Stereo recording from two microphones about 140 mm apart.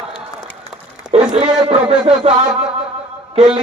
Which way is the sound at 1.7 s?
45° right (ahead or behind).